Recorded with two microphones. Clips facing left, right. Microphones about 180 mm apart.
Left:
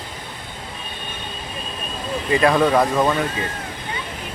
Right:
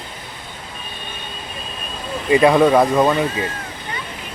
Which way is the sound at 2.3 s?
15° right (ahead or behind).